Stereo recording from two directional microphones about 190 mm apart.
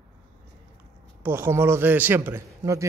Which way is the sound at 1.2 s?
10° right (ahead or behind).